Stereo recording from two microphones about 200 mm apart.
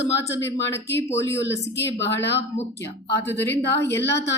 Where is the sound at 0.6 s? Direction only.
60° left (ahead or behind).